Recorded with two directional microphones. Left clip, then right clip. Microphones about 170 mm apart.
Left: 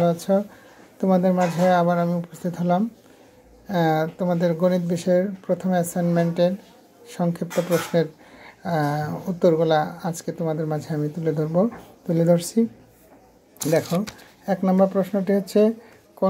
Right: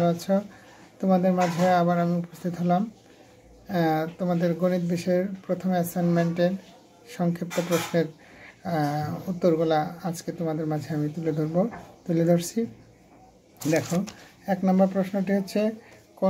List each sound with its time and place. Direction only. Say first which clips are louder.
0.0 s speech: left 4 dB; 25° left (ahead or behind)
13.7 s speech: left 4 dB; 20° left (ahead or behind)